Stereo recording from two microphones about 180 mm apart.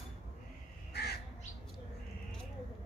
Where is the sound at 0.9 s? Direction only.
65° left (ahead or behind).